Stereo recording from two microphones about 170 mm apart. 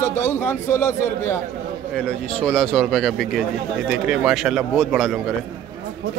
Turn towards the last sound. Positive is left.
turn(degrees=0)  # may be behind; listen again after turning